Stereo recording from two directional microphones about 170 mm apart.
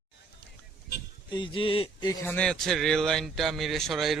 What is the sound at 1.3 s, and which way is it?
Speech, 30° left (ahead or behind).